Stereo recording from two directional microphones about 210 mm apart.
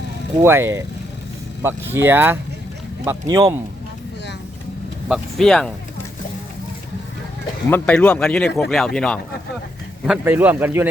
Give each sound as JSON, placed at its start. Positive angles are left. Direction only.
{"t": 0.4, "sound": "speech", "side_deg": -10}
{"t": 5.0, "sound": "speech", "side_deg": 0}
{"t": 7.7, "sound": "speech", "side_deg": 5}
{"t": 10.1, "sound": "speech", "side_deg": -10}